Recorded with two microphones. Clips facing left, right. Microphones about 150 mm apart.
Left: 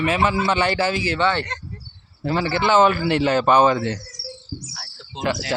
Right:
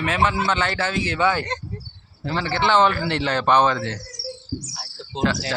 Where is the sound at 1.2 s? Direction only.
5° right (ahead or behind).